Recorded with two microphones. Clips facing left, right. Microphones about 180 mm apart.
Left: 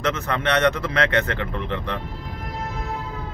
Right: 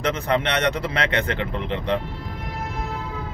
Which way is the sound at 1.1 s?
15° right (ahead or behind).